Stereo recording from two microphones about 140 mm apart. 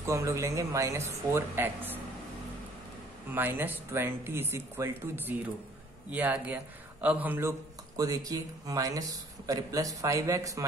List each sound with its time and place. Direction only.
0.0 s a man's voice: 20° right (ahead or behind)
3.3 s a man's voice: 15° right (ahead or behind)